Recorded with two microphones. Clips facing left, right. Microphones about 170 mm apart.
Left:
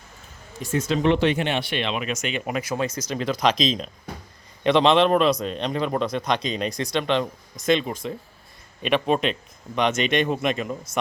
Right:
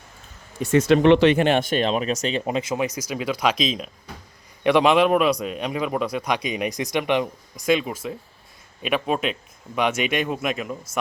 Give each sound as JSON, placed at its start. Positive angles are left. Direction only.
{"t": 0.6, "sound": "speech", "side_deg": -70}
{"t": 1.4, "sound": "speech", "side_deg": -45}
{"t": 2.4, "sound": "a man's voice", "side_deg": -25}